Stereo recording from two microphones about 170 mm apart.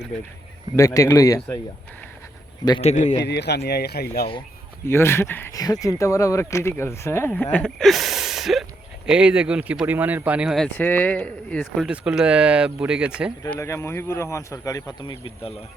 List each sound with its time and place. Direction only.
0.8 s speech: 20° left (ahead or behind)
2.8 s speech: 45° left (ahead or behind)
3.2 s speech: 80° left
4.9 s speech: 15° left (ahead or behind); by 10.7 s 5° right (ahead or behind)
10.7 s speech: 10° left (ahead or behind)
11.9 s speech: 5° right (ahead or behind)
13.5 s speech: 15° left (ahead or behind)